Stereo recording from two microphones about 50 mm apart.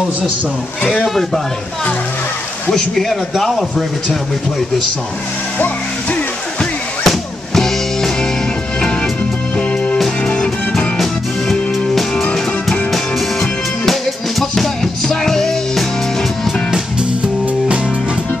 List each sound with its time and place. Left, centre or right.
1.0 s a man's voice: centre
2.7 s a man's voice: centre
6.6 s music: centre
10.2 s music: centre
12.6 s music: centre